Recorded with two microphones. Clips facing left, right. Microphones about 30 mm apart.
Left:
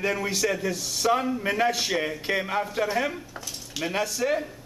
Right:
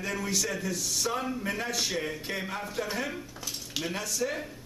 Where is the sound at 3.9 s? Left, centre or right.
Left.